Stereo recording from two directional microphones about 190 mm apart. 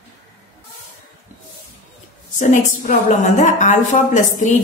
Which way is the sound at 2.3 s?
40° left (ahead or behind).